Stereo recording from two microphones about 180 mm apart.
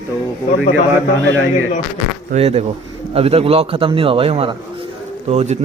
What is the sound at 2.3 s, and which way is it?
A man's voice, 35° right (ahead or behind).